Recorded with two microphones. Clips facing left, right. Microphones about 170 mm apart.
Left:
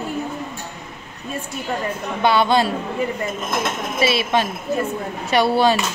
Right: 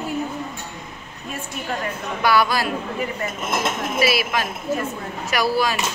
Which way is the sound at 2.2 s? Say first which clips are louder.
Left 3 dB; 25° left (ahead or behind).